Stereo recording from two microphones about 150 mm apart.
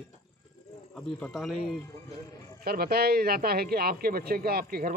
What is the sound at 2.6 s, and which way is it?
Speech, 90° right.